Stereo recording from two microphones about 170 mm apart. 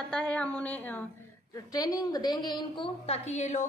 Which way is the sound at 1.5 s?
20° left (ahead or behind).